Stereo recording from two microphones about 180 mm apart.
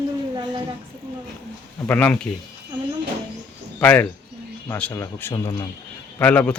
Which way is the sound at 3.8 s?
10° left (ahead or behind).